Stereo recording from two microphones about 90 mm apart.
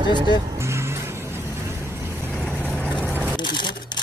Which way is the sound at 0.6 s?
30° right (ahead or behind).